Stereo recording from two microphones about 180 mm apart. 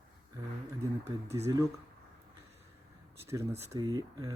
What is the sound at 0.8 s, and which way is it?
Speech, 15° right (ahead or behind).